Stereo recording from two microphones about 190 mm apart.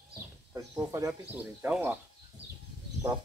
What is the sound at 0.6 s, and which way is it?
Speech, 15° right (ahead or behind).